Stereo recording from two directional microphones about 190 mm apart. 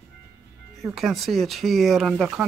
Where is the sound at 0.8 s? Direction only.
Centre (ahead or behind).